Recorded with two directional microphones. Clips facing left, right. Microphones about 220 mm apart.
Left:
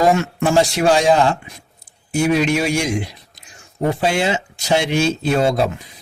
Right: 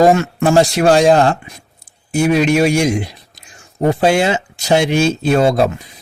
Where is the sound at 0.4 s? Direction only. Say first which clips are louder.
Right 4 dB; 50° right (ahead or behind).